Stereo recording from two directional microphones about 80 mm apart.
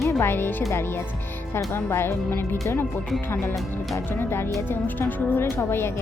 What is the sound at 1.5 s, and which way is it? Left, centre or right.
Speech, left.